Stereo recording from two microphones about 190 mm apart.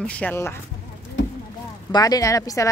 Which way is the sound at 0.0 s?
5° left (ahead or behind).